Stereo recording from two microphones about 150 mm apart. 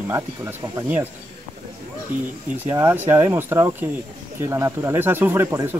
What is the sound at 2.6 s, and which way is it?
Speech, 15° right (ahead or behind).